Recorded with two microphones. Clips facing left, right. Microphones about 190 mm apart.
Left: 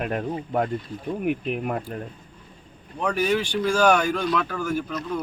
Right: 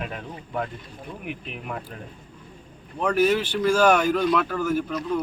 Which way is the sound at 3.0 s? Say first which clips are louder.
Right 2 dB; 5° right (ahead or behind).